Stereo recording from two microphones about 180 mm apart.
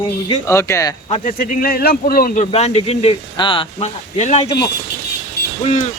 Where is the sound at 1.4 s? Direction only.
50° left (ahead or behind).